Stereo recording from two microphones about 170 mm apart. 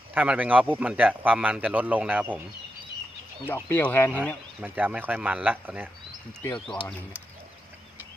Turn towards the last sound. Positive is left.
turn(degrees=5)  # may be behind; listen again after turning